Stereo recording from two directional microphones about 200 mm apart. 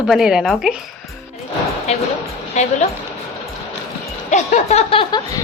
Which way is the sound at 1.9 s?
30° left (ahead or behind).